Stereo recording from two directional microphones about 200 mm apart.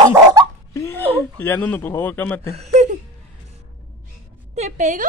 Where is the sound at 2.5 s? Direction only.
35° right (ahead or behind).